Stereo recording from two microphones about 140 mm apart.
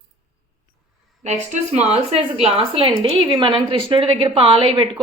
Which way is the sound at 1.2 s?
55° right (ahead or behind).